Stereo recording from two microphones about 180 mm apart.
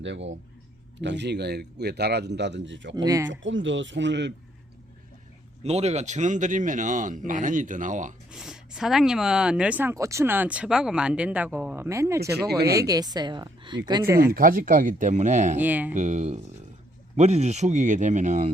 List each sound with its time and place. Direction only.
0.0 s speech: 90° right
0.9 s a man's voice: 80° right
2.9 s a woman's voice: 20° right (ahead or behind)
3.2 s speech: 90° right
5.6 s speech: 35° right (ahead or behind)
8.3 s speech: 5° right (ahead or behind)
12.5 s speech: 65° right (ahead or behind)
12.7 s a woman's voice: 20° right (ahead or behind)
14.3 s speech: 50° right (ahead or behind)
15.6 s speech: 10° right (ahead or behind)
16.0 s speech: 40° right (ahead or behind)